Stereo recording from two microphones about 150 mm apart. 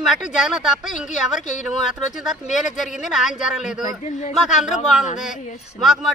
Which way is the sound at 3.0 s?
5° right (ahead or behind).